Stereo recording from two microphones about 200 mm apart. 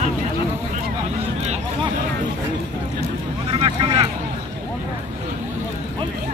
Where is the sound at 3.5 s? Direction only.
25° right (ahead or behind).